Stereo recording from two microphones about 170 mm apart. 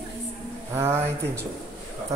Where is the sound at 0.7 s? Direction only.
15° right (ahead or behind).